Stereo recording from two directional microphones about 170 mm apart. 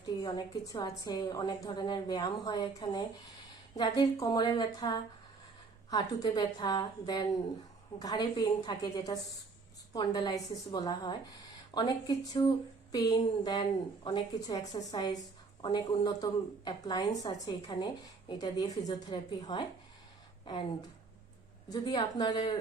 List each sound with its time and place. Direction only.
0.2 s a woman's voice: 25° left (ahead or behind)
21.7 s a woman's voice: 25° left (ahead or behind)